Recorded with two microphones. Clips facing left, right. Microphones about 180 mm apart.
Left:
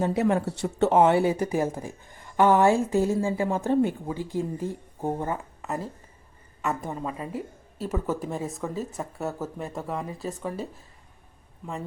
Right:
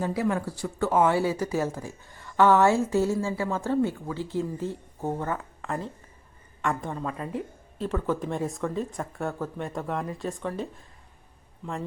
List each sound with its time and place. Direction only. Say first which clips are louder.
0.0 s a woman's voice: left 3 dB; 25° left (ahead or behind); by 10.7 s 5° left (ahead or behind)